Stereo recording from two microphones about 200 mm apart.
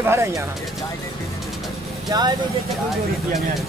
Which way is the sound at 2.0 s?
20° right (ahead or behind).